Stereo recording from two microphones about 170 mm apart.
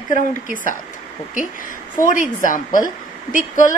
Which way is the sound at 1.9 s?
50° left (ahead or behind).